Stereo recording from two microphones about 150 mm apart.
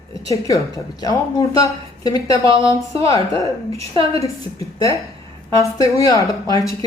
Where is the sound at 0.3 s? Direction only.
25° left (ahead or behind).